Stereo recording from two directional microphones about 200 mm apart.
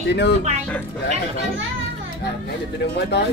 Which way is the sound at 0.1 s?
60° left (ahead or behind).